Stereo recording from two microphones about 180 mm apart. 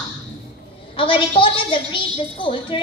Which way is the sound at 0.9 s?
30° left (ahead or behind).